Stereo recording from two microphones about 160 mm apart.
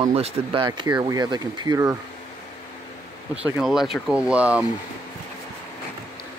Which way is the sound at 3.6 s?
Centre (ahead or behind).